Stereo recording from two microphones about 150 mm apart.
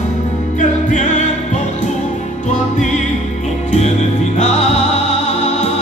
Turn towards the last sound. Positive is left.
turn(degrees=50)  # may be behind; listen again after turning